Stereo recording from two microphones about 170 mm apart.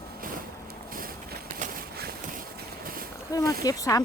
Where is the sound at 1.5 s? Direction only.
55° right (ahead or behind).